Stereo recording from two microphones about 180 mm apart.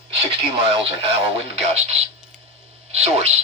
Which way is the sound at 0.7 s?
30° right (ahead or behind).